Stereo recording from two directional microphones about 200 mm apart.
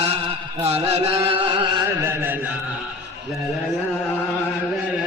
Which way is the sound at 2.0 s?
10° right (ahead or behind).